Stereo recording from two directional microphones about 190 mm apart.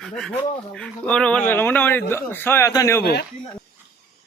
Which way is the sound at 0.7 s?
5° left (ahead or behind).